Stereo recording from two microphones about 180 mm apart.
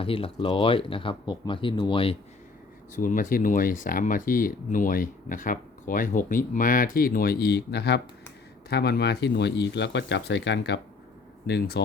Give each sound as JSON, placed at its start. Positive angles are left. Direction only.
{"t": 0.0, "sound": "speech", "side_deg": 30}
{"t": 2.9, "sound": "speech", "side_deg": 45}
{"t": 11.4, "sound": "speech", "side_deg": 65}